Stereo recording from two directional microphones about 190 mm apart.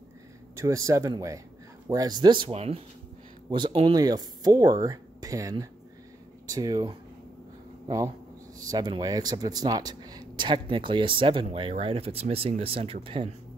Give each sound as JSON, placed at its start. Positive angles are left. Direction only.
{"t": 0.6, "sound": "speech", "side_deg": -15}
{"t": 8.5, "sound": "speech", "side_deg": -20}